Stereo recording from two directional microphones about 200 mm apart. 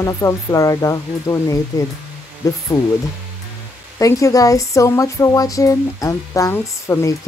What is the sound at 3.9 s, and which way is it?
Speech, 15° left (ahead or behind).